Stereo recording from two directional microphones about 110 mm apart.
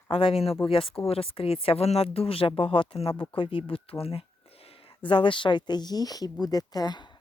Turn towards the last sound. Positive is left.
turn(degrees=40)  # may be behind; listen again after turning